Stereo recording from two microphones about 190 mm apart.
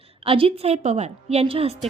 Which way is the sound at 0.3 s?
30° right (ahead or behind).